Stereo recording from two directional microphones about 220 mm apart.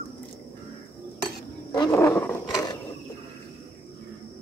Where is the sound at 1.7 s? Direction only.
15° left (ahead or behind).